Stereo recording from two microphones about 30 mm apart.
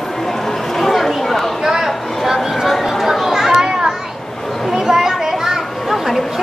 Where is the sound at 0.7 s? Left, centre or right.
Centre.